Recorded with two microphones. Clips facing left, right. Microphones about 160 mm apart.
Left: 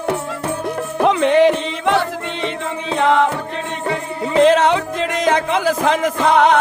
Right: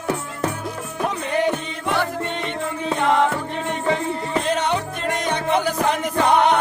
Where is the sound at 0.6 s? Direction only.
80° left.